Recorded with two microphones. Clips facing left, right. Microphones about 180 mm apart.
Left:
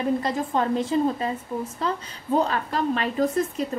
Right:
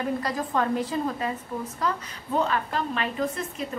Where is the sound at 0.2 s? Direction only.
25° left (ahead or behind).